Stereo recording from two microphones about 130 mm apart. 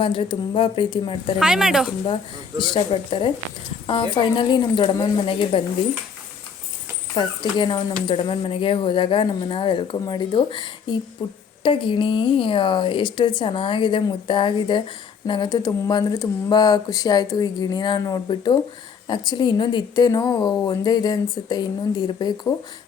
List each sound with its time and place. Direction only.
0.0 s speech: 40° left (ahead or behind)
1.4 s speech: 5° right (ahead or behind)
2.6 s speech: 40° left (ahead or behind)
7.2 s speech: 35° left (ahead or behind)